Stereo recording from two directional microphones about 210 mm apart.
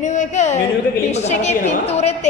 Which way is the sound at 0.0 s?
35° left (ahead or behind).